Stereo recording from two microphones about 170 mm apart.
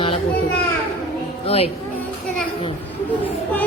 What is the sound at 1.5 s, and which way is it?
Speech, 35° left (ahead or behind).